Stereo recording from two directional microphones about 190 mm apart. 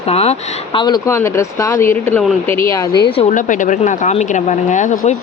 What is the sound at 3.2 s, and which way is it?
Speech, 40° left (ahead or behind).